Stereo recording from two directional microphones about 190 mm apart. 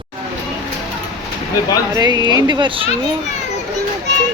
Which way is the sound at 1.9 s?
20° right (ahead or behind).